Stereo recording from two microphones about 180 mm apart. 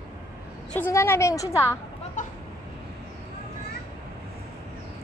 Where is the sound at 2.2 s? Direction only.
45° left (ahead or behind).